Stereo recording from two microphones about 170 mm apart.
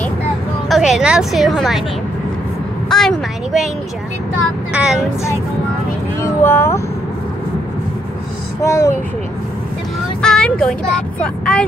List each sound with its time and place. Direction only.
0.7 s a woman's voice: centre (ahead or behind)
2.9 s a woman's voice: centre (ahead or behind)
4.7 s a woman's voice: 5° right (ahead or behind)
6.2 s speech: 15° left (ahead or behind)
8.6 s speech: 20° left (ahead or behind)
10.2 s speech: 5° left (ahead or behind)